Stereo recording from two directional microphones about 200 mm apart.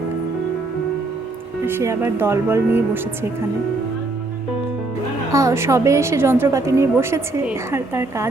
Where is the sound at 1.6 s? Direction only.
10° right (ahead or behind).